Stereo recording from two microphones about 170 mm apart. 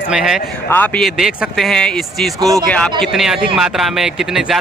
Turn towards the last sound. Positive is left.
turn(degrees=0)  # may be behind; listen again after turning